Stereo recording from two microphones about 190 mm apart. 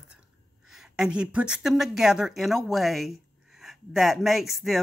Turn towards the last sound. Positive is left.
turn(degrees=0)  # may be behind; listen again after turning